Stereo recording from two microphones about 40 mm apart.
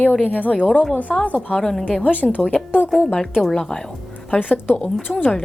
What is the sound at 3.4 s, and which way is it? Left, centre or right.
Speech, centre.